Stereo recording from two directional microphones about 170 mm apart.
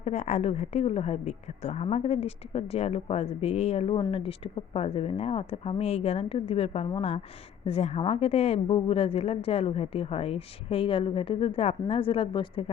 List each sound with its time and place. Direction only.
0.0 s a woman's voice: 40° left (ahead or behind)